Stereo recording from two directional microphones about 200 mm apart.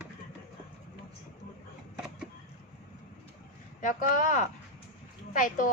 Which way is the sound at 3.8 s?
40° left (ahead or behind).